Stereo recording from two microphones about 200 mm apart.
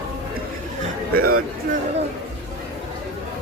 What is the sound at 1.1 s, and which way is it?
Speech, 50° right (ahead or behind).